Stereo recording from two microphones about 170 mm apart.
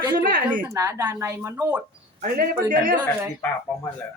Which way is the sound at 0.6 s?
15° right (ahead or behind).